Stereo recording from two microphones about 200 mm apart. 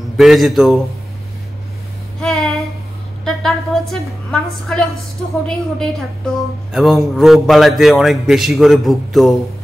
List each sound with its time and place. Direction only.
0.2 s a man's voice: centre (ahead or behind)
2.1 s a sound: 5° left (ahead or behind)
5.5 s a man's voice: 5° left (ahead or behind)